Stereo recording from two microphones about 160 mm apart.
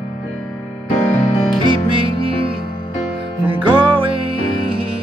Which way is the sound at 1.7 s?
35° right (ahead or behind).